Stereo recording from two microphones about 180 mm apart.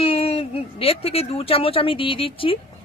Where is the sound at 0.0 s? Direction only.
35° left (ahead or behind).